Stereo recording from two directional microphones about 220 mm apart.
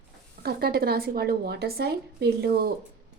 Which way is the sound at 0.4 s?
45° right (ahead or behind).